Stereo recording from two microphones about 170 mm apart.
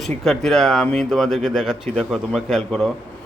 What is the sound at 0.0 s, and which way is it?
Speech, centre (ahead or behind).